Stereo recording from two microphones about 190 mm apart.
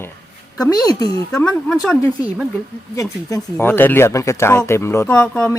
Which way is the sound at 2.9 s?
15° left (ahead or behind).